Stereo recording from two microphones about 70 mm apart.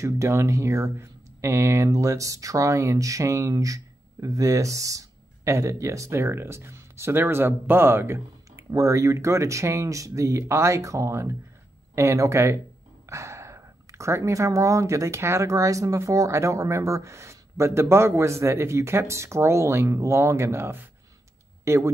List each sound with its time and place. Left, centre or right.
0.0 s speech: right
6.2 s speech: right
8.7 s speech: right